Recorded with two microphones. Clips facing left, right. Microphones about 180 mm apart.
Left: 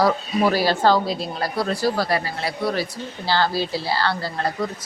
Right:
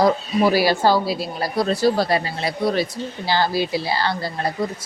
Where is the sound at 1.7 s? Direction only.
25° right (ahead or behind).